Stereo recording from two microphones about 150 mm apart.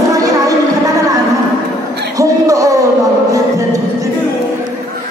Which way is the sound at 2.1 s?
20° right (ahead or behind).